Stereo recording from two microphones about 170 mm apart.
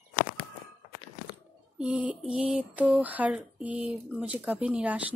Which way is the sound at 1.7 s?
5° right (ahead or behind).